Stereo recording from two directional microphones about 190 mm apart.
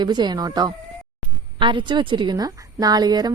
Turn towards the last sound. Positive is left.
turn(degrees=-20)  # may be behind; listen again after turning